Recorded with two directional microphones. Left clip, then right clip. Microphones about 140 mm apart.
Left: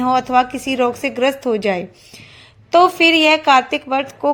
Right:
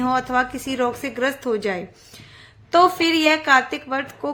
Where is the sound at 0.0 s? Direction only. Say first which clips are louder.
Left 6 dB; 25° left (ahead or behind).